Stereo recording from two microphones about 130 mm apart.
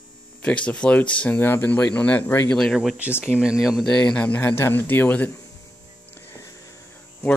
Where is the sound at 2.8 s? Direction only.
10° right (ahead or behind); by 5.3 s 15° left (ahead or behind).